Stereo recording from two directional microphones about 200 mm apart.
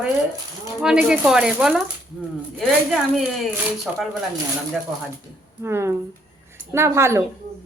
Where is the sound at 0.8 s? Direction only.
5° right (ahead or behind).